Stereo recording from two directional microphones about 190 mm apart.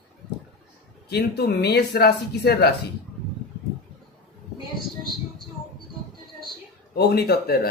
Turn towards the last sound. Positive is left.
turn(degrees=55)  # may be behind; listen again after turning